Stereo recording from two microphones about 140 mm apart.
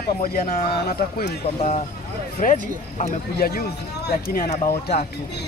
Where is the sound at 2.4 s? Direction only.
65° left (ahead or behind).